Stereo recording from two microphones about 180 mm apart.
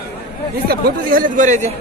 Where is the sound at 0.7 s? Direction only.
50° right (ahead or behind).